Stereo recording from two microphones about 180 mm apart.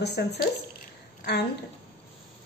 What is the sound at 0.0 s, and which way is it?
Speech, 65° left (ahead or behind).